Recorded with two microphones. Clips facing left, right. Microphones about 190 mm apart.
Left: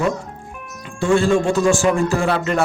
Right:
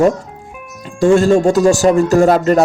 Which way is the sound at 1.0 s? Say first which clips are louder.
Right 6 dB; 40° right (ahead or behind).